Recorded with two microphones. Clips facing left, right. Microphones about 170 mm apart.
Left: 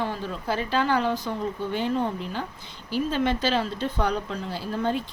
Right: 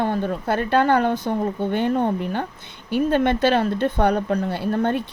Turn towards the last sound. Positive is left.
turn(degrees=-60)  # may be behind; listen again after turning